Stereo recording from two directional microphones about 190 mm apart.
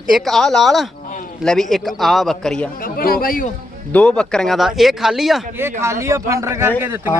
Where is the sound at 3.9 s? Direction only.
5° left (ahead or behind).